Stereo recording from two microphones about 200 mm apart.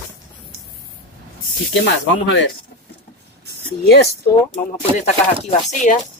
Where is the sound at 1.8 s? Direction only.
65° left (ahead or behind).